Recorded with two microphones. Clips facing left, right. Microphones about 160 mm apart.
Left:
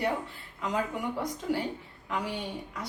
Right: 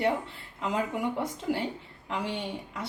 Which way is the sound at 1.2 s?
25° right (ahead or behind).